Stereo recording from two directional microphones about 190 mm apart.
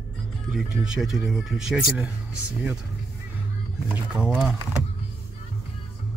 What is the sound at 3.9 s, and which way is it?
Speech, 5° right (ahead or behind).